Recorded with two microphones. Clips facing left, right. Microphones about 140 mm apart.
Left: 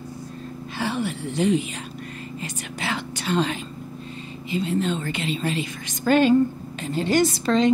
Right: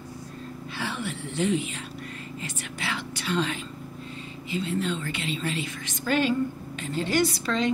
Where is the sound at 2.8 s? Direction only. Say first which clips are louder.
Left 5 dB; 45° left (ahead or behind).